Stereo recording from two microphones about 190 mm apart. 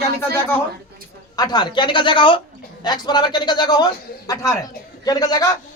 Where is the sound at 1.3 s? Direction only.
20° left (ahead or behind).